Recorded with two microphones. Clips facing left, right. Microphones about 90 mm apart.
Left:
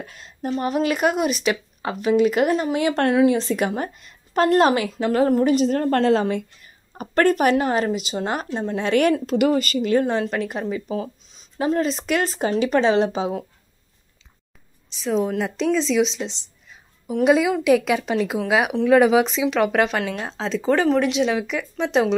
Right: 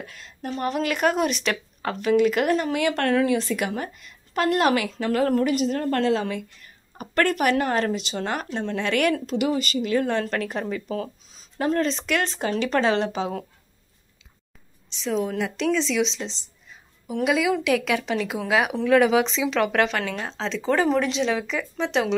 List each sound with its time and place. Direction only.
0.0 s a woman's voice: 25° left (ahead or behind)
6.6 s a sound: 25° left (ahead or behind)
7.5 s speech: 15° left (ahead or behind)
9.2 s speech: 50° left (ahead or behind)
10.1 s speech: 5° left (ahead or behind)
15.0 s speech: 20° left (ahead or behind)
17.2 s a woman's voice: 35° left (ahead or behind)
17.5 s speech: 20° left (ahead or behind)